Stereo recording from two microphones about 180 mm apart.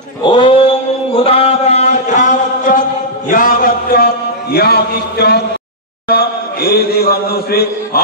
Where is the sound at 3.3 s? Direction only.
50° left (ahead or behind).